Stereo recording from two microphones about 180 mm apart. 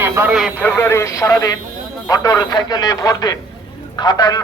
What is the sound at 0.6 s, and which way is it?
Speech, 10° left (ahead or behind).